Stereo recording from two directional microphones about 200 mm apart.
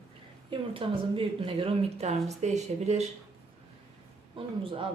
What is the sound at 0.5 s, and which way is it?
Speech, 25° right (ahead or behind).